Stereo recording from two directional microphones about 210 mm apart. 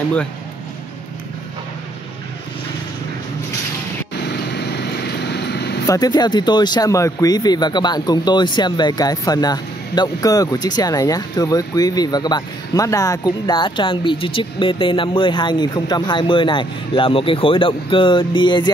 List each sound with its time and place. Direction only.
4.3 s vehicle: 50° left (ahead or behind)
5.9 s speech: 20° left (ahead or behind)